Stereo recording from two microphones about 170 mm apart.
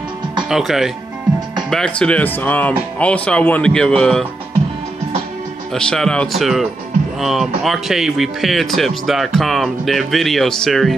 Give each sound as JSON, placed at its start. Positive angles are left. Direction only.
{"t": 0.4, "sound": "speech", "side_deg": 0}
{"t": 5.7, "sound": "speech", "side_deg": 5}